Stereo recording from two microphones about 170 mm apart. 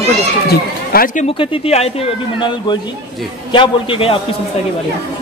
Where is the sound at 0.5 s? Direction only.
55° left (ahead or behind).